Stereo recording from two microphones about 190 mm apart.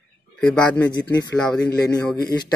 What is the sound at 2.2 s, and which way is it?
Speech, 20° left (ahead or behind).